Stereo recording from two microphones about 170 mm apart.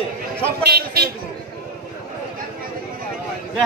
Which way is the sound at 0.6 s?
65° right (ahead or behind).